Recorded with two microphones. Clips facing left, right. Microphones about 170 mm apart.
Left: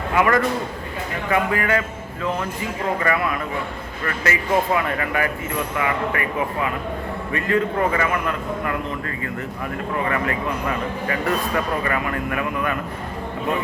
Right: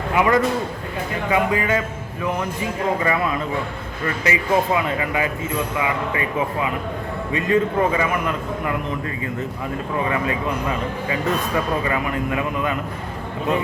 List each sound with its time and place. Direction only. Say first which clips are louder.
0.1 s a man's voice: right 1 dB; 15° right (ahead or behind)